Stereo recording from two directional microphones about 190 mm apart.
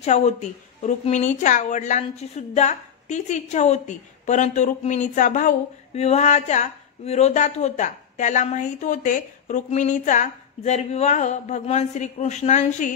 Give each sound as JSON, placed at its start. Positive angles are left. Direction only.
{"t": 0.0, "sound": "a woman's voice", "side_deg": 35}